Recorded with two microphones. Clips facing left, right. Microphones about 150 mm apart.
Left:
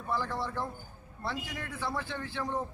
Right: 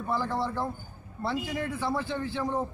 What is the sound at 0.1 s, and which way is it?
Speech, 15° right (ahead or behind).